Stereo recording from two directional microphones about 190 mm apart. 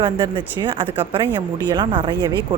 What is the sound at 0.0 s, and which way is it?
Speech, 25° right (ahead or behind).